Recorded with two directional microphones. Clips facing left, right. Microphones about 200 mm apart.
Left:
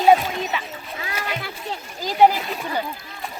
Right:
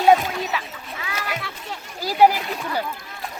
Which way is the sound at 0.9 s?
35° left (ahead or behind).